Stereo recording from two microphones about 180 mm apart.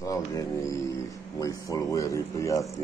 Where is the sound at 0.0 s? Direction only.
20° left (ahead or behind).